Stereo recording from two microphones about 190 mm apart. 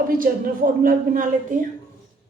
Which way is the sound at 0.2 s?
50° right (ahead or behind).